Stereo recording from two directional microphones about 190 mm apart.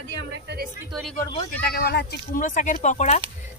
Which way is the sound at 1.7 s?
55° left (ahead or behind).